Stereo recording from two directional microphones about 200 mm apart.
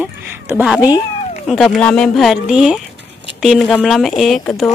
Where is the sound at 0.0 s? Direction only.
10° right (ahead or behind).